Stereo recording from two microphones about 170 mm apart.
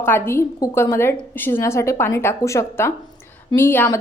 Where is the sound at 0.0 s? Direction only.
15° left (ahead or behind).